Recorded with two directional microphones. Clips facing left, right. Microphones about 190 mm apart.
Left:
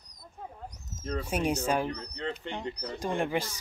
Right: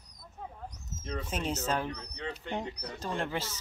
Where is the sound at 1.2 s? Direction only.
10° left (ahead or behind).